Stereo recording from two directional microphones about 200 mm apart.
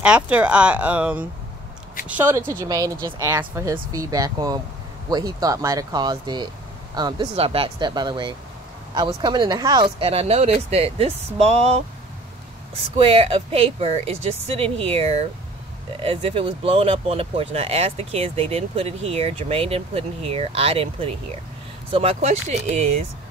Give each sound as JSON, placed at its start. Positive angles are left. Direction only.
{"t": 0.0, "sound": "speech", "side_deg": -5}
{"t": 12.9, "sound": "speech", "side_deg": -25}